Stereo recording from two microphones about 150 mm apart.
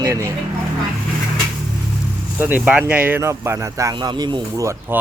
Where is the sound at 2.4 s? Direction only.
10° right (ahead or behind); by 4.4 s 30° right (ahead or behind).